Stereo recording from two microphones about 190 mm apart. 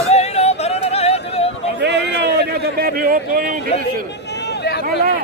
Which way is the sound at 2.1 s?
60° right (ahead or behind).